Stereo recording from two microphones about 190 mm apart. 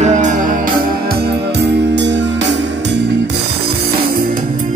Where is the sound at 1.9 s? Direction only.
70° right (ahead or behind).